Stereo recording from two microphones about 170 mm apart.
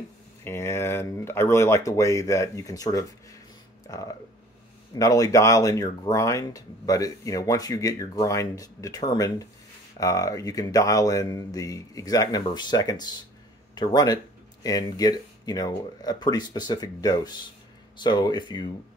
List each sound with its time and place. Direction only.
0.4 s speech: 15° left (ahead or behind)